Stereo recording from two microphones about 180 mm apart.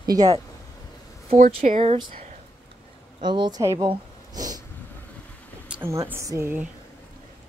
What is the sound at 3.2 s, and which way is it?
Speech, 25° right (ahead or behind).